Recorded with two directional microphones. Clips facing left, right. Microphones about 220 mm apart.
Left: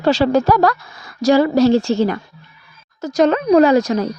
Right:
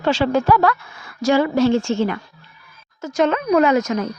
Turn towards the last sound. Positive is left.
turn(degrees=35)  # may be behind; listen again after turning